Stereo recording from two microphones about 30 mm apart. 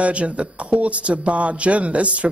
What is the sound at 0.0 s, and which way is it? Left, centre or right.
Speech, right.